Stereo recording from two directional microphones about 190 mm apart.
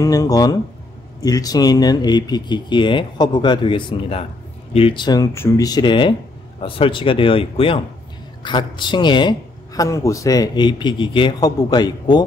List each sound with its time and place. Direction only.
0.0 s speech: 20° left (ahead or behind)